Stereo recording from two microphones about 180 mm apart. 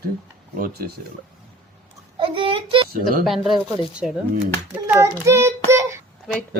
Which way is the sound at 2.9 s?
50° right (ahead or behind).